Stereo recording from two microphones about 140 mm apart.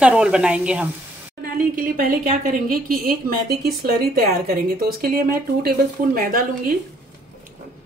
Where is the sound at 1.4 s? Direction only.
90° right.